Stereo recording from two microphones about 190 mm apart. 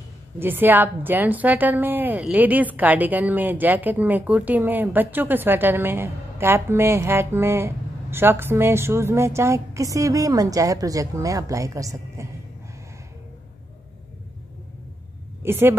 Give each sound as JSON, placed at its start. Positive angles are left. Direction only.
{"t": 0.4, "sound": "a woman's voice", "side_deg": -10}
{"t": 15.4, "sound": "a woman's voice", "side_deg": -10}